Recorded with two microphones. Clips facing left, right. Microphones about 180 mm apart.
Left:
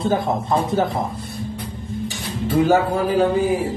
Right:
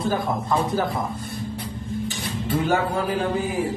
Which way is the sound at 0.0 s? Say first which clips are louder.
Left 4 dB; 25° left (ahead or behind).